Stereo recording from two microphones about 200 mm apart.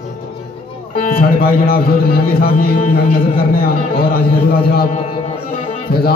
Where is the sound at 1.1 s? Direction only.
50° left (ahead or behind).